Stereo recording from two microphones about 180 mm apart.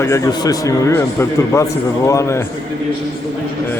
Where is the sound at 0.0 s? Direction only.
20° left (ahead or behind).